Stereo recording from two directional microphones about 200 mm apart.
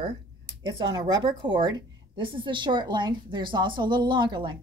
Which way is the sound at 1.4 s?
25° right (ahead or behind).